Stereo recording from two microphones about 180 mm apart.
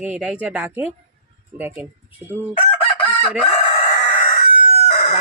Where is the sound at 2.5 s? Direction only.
30° left (ahead or behind).